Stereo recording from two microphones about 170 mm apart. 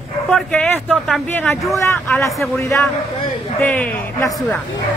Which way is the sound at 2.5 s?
15° left (ahead or behind).